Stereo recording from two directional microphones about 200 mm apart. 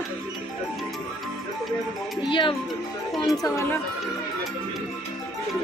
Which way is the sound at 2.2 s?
25° left (ahead or behind).